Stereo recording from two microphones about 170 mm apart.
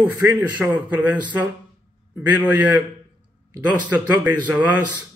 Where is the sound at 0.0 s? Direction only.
10° right (ahead or behind).